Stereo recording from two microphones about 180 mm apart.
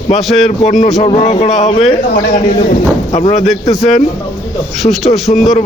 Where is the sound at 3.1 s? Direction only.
35° left (ahead or behind).